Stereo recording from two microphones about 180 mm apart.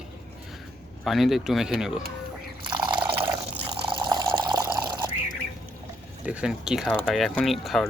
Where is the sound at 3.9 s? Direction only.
25° right (ahead or behind).